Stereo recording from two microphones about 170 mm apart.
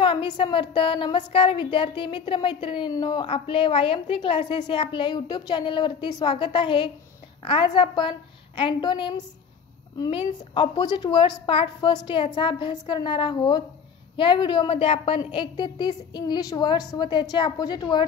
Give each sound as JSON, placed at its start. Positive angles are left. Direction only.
{"t": 0.0, "sound": "a woman's voice", "side_deg": 30}